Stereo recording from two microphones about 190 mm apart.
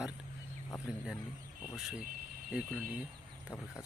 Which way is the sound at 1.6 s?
Centre (ahead or behind).